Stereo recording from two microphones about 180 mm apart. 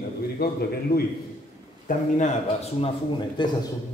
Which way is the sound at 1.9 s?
50° left (ahead or behind).